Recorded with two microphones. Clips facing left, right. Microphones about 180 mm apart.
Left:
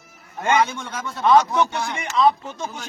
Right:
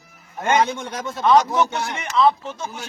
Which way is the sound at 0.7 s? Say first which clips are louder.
Right 3 dB; 15° right (ahead or behind).